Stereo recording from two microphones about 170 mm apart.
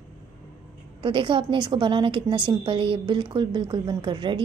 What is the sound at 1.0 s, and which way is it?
A woman's voice, 30° right (ahead or behind).